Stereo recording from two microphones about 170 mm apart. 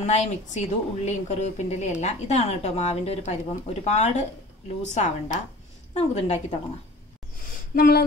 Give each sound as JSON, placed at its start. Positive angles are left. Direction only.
{"t": 0.0, "sound": "speech", "side_deg": 40}
{"t": 7.7, "sound": "speech", "side_deg": 60}